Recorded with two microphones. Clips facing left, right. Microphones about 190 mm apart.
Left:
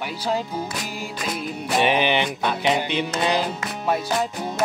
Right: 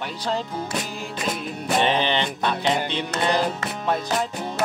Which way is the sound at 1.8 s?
10° left (ahead or behind).